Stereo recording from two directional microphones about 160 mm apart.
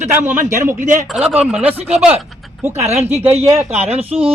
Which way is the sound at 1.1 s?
5° right (ahead or behind).